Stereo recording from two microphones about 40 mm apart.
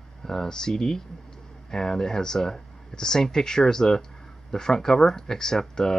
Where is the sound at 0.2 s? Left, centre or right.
Centre.